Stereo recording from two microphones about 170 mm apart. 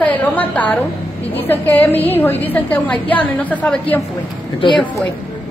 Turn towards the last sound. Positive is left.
turn(degrees=0)  # may be behind; listen again after turning